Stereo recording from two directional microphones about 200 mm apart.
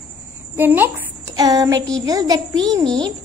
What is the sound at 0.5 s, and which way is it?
Child singing, 10° right (ahead or behind).